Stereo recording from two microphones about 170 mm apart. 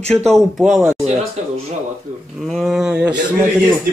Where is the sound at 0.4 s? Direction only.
Centre (ahead or behind).